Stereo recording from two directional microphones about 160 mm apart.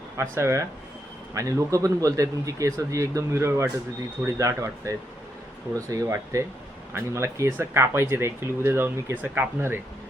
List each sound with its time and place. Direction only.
0.2 s a man's voice: 15° right (ahead or behind)